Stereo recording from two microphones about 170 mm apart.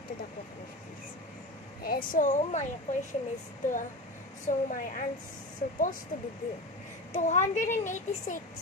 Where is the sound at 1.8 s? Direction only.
60° left (ahead or behind).